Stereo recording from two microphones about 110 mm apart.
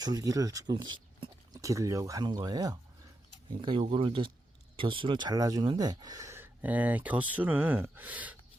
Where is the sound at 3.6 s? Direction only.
55° right (ahead or behind); by 6.4 s 30° right (ahead or behind).